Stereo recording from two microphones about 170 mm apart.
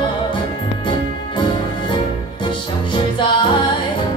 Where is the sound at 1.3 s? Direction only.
30° left (ahead or behind).